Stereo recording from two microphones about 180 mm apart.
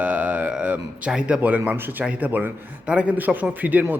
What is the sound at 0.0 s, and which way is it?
Speech, 10° right (ahead or behind).